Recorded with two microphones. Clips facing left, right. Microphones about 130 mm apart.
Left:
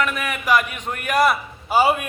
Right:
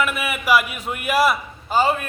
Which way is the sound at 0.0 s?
5° right (ahead or behind).